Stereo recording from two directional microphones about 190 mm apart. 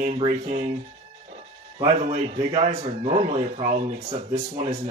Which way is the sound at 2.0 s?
35° right (ahead or behind).